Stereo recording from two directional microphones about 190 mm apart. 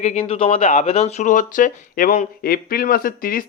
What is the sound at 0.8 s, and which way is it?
Speech, 35° left (ahead or behind).